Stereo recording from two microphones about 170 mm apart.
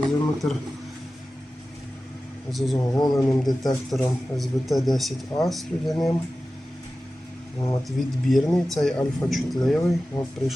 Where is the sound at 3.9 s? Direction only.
Centre (ahead or behind).